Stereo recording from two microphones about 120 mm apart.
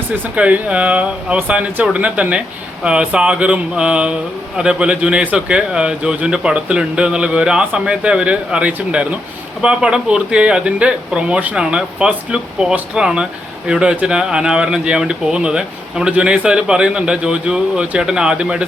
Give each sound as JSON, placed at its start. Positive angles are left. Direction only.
{"t": 0.3, "sound": "speech", "side_deg": -10}